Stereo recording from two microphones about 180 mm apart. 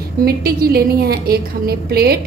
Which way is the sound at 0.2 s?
60° right (ahead or behind).